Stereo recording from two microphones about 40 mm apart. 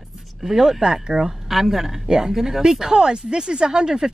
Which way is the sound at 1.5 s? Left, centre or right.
Centre.